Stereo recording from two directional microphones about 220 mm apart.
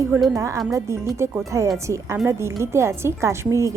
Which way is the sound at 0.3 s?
15° right (ahead or behind).